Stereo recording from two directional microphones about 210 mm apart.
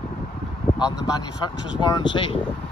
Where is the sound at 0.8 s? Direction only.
20° left (ahead or behind).